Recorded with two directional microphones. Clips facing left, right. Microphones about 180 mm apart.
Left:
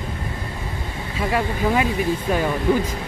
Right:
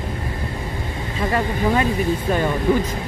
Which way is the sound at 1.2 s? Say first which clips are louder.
Right 1 dB; 5° left (ahead or behind).